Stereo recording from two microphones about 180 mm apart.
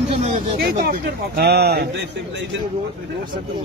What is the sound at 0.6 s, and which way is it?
Speech, 55° right (ahead or behind).